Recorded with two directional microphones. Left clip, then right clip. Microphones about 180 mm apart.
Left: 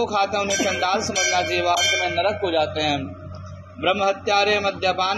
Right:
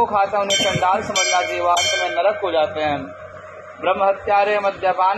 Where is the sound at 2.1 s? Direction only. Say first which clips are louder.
Right 3 dB; 30° left (ahead or behind).